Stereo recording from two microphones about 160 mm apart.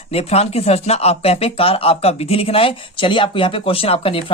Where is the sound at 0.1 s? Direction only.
40° left (ahead or behind).